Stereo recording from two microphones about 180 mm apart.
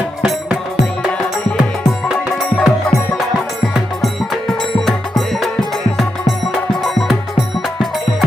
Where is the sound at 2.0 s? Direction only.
Centre (ahead or behind).